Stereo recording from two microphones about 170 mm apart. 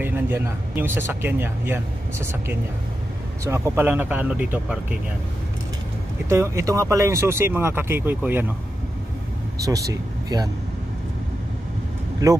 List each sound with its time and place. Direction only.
0.0 s speech: 10° right (ahead or behind)
6.2 s speech: 15° right (ahead or behind)
9.7 s speech: 15° right (ahead or behind)
12.2 s speech: 20° right (ahead or behind)